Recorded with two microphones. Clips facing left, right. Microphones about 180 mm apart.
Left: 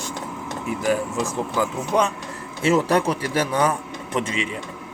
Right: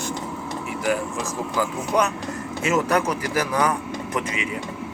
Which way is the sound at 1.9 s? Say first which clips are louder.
Even; 25° left (ahead or behind).